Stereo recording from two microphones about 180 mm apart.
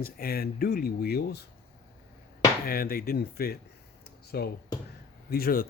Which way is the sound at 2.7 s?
55° left (ahead or behind).